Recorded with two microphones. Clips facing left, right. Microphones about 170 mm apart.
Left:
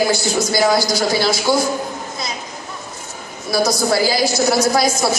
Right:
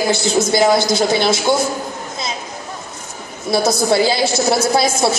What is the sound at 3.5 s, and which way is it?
A woman's voice, 25° right (ahead or behind).